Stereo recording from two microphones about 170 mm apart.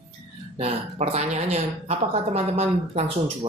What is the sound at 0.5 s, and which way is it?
Speech, 35° right (ahead or behind).